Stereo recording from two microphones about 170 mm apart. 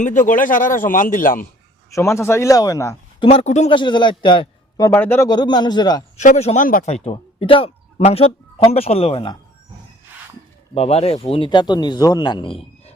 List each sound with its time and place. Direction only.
0.0 s a man's voice: 50° left (ahead or behind)
1.9 s speech: 15° left (ahead or behind)
3.2 s speech: 40° left (ahead or behind)
3.7 s a man's voice: 25° left (ahead or behind)
6.1 s speech: 45° left (ahead or behind)
6.9 s speech: 40° left (ahead or behind)
10.8 s a man's voice: 40° left (ahead or behind)